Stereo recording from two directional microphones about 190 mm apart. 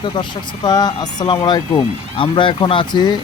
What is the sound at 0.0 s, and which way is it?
Speech, 25° left (ahead or behind).